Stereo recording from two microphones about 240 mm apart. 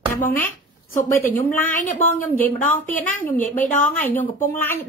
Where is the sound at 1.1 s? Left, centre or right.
Centre.